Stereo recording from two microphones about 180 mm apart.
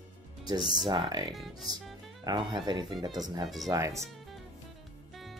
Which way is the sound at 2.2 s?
25° right (ahead or behind).